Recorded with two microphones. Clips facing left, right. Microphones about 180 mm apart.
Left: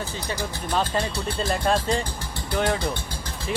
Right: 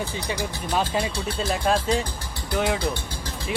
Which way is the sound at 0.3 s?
5° right (ahead or behind).